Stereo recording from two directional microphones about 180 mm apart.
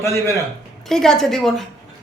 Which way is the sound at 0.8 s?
5° left (ahead or behind).